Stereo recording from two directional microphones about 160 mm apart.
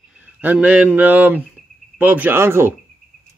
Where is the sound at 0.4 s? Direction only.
10° right (ahead or behind).